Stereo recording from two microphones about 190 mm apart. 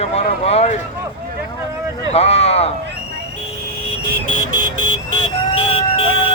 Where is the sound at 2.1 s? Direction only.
35° left (ahead or behind).